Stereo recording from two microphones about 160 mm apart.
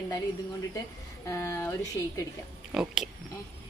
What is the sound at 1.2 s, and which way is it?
Speech, 20° left (ahead or behind).